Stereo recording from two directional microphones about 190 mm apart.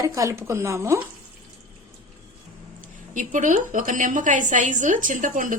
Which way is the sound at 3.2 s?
40° right (ahead or behind).